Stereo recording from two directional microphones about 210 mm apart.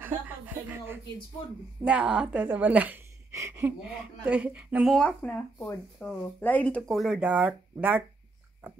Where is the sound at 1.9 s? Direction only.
5° right (ahead or behind).